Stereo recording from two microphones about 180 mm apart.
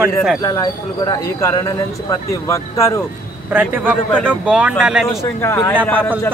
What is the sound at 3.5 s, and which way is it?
Speech, 10° right (ahead or behind).